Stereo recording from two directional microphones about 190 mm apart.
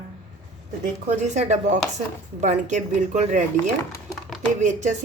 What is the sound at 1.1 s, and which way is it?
Speech, 40° right (ahead or behind).